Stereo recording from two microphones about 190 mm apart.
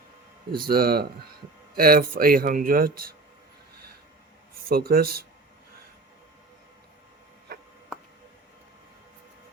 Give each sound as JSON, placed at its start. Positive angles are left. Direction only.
{"t": 0.6, "sound": "speech", "side_deg": -50}
{"t": 4.7, "sound": "speech", "side_deg": -55}
{"t": 7.5, "sound": "a sound", "side_deg": -60}